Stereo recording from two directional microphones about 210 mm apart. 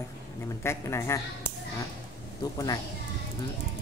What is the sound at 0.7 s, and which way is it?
Speech, 15° left (ahead or behind).